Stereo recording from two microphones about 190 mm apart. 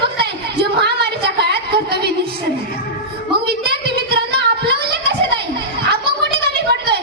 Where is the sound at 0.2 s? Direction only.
60° right (ahead or behind).